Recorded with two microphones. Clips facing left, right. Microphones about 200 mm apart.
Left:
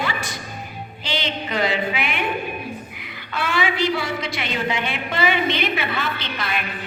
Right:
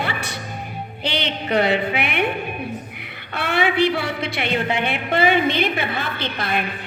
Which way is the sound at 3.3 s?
60° right (ahead or behind).